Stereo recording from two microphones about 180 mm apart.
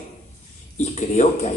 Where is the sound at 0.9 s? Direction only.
40° left (ahead or behind).